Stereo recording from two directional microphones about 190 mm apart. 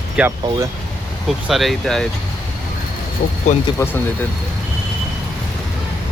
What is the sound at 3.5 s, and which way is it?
Speech, 40° left (ahead or behind).